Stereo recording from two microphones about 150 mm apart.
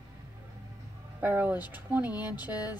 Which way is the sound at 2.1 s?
25° left (ahead or behind).